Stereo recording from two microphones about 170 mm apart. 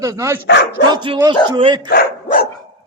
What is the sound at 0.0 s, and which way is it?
Speech, 20° right (ahead or behind).